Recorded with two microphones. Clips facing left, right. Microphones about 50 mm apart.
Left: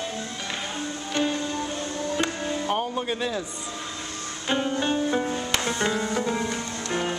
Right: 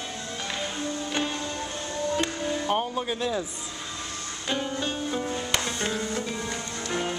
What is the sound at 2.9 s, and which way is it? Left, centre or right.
Speech, centre.